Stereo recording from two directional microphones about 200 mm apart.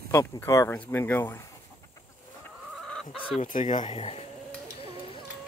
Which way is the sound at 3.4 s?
40° left (ahead or behind).